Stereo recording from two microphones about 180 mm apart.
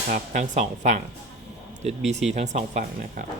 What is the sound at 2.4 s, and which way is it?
Speech, 40° right (ahead or behind).